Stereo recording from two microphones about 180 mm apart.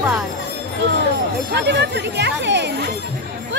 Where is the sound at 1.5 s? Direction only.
75° right (ahead or behind).